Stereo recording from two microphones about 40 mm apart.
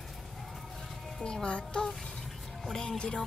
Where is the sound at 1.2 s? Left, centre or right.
Left.